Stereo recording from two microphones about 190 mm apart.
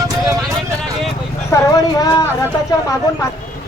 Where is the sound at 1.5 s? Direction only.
20° left (ahead or behind).